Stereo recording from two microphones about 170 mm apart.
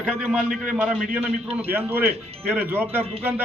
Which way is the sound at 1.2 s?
10° right (ahead or behind).